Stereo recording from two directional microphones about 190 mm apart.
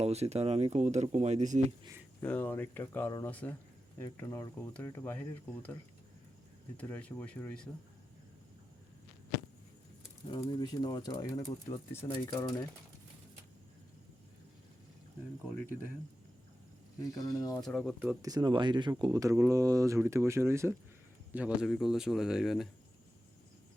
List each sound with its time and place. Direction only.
0.0 s speech: 35° right (ahead or behind)
2.2 s speech: 10° left (ahead or behind)
6.7 s speech: 10° left (ahead or behind)
10.4 s speech: 20° left (ahead or behind)
17.0 s speech: 20° left (ahead or behind)
17.6 s speech: centre (ahead or behind)
18.2 s speech: 20° right (ahead or behind); by 22.7 s centre (ahead or behind)